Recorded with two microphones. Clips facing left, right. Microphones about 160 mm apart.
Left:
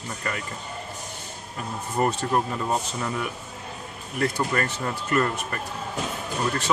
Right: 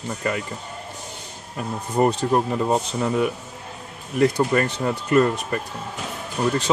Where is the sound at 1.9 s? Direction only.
20° right (ahead or behind).